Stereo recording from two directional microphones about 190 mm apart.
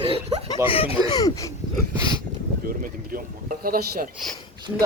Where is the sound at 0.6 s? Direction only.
30° left (ahead or behind).